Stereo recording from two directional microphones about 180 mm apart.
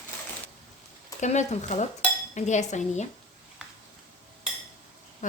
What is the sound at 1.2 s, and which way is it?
Speech, 40° left (ahead or behind).